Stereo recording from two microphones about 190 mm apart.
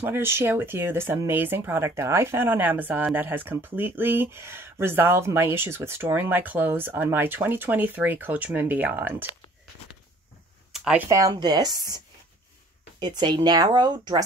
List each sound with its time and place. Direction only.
0.0 s speech: 10° right (ahead or behind)
10.7 s speech: 5° right (ahead or behind); by 12.0 s 20° right (ahead or behind)
13.0 s speech: 20° right (ahead or behind)